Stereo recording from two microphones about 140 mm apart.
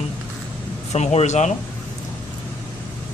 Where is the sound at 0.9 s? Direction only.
55° left (ahead or behind).